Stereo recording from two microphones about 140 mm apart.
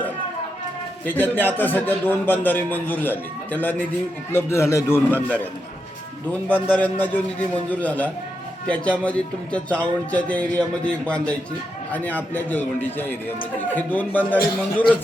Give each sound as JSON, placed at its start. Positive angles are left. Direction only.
{"t": 1.0, "sound": "a man's voice", "side_deg": 15}
{"t": 6.5, "sound": "a man's voice", "side_deg": 10}